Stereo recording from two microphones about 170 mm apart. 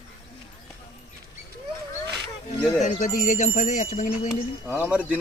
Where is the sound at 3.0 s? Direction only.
45° left (ahead or behind).